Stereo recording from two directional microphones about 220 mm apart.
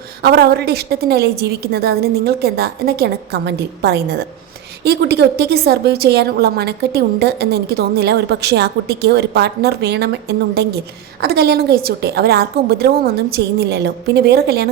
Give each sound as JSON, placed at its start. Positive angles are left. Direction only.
{"t": 0.2, "sound": "a woman's voice", "side_deg": -45}